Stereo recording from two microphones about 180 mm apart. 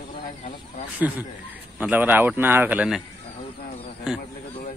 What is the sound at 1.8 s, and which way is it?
A man's voice, 10° right (ahead or behind).